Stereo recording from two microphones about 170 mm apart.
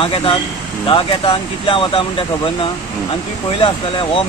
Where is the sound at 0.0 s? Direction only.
30° left (ahead or behind).